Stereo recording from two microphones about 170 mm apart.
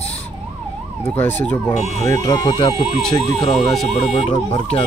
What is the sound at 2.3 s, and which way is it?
Speech, 30° left (ahead or behind).